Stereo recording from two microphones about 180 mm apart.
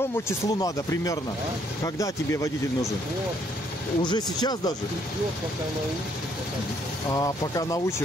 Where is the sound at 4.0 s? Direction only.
25° left (ahead or behind).